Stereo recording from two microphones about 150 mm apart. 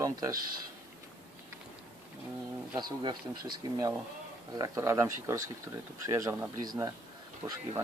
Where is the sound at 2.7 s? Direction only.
30° right (ahead or behind).